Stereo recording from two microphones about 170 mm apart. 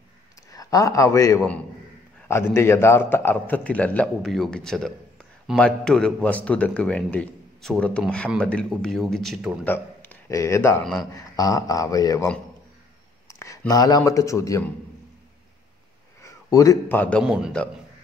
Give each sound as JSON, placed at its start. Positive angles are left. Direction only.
{"t": 0.5, "sound": "a man's voice", "side_deg": 20}
{"t": 9.7, "sound": "a man's voice", "side_deg": 15}
{"t": 13.3, "sound": "speech", "side_deg": 20}
{"t": 16.2, "sound": "a man's voice", "side_deg": 20}
{"t": 17.2, "sound": "a man's voice", "side_deg": -5}